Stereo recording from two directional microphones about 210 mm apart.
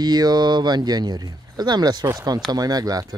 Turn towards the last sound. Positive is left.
turn(degrees=-20)  # may be behind; listen again after turning